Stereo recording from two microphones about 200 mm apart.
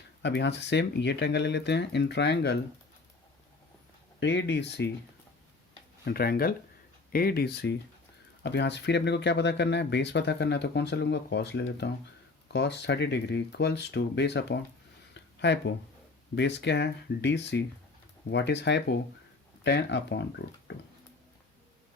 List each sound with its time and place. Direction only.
0.2 s speech: 60° left (ahead or behind)
4.2 s speech: 60° left (ahead or behind)
6.1 s speech: 50° left (ahead or behind)
15.1 s a sound: 60° left (ahead or behind)
16.3 s speech: 60° left (ahead or behind)